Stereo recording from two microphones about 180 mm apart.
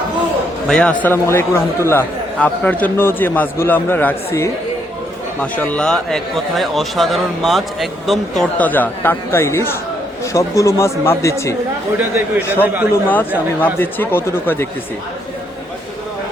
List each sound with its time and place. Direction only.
0.7 s a man's voice: 5° left (ahead or behind)
12.1 s a man's voice: 10° right (ahead or behind)
12.9 s a man's voice: 10° left (ahead or behind)